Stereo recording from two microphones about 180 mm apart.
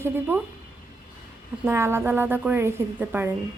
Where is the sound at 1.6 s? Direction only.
15° right (ahead or behind).